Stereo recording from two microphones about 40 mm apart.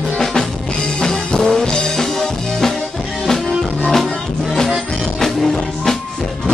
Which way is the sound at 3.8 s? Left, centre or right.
Centre.